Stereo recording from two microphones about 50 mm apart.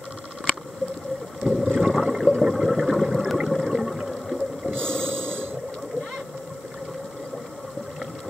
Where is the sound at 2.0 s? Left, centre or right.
Centre.